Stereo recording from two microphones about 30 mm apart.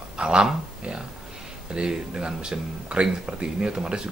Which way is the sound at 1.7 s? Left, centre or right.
Right.